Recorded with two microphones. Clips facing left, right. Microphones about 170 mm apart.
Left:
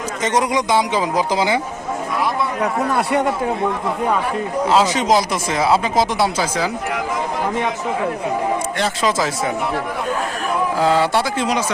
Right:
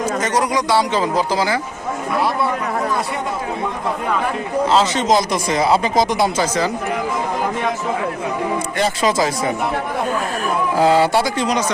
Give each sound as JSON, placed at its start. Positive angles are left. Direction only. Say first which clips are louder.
{"t": 0.2, "sound": "a man's voice", "louder": "left 5 dB", "side_deg": 20}
{"t": 2.9, "sound": "a man's voice", "louder": "left 4 dB", "side_deg": 70}
{"t": 4.7, "sound": "speech", "louder": "left 1 dB", "side_deg": 10}
{"t": 8.8, "sound": "speech", "louder": "right 4 dB", "side_deg": 0}
{"t": 10.8, "sound": "speech", "louder": "right 3 dB", "side_deg": -5}